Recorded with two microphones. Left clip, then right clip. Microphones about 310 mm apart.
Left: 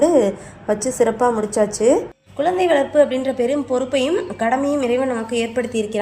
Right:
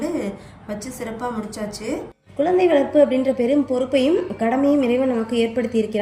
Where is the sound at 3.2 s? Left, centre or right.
Left.